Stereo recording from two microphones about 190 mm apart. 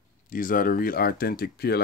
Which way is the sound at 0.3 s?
45° left (ahead or behind).